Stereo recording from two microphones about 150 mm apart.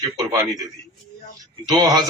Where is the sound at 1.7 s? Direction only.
25° right (ahead or behind).